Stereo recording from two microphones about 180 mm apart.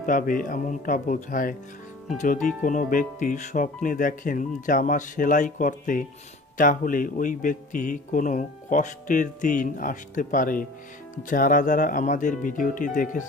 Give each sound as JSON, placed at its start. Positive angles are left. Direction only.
{"t": 0.0, "sound": "speech", "side_deg": 45}